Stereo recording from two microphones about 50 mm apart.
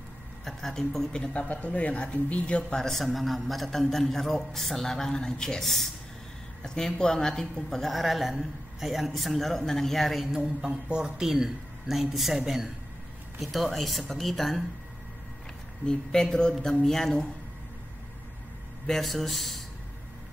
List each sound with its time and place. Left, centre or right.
0.5 s a man's voice: centre
1.3 s speech: left
2.8 s a man's voice: centre
10.3 s a man's voice: centre
15.8 s speech: centre
18.9 s a man's voice: centre